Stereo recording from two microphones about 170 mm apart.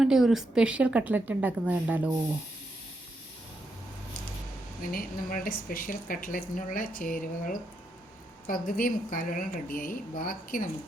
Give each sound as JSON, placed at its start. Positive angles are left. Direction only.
{"t": 0.0, "sound": "a woman's voice", "side_deg": 0}
{"t": 4.8, "sound": "speech", "side_deg": 55}